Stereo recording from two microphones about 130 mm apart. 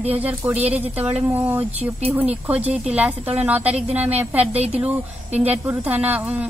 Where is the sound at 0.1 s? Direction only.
10° right (ahead or behind).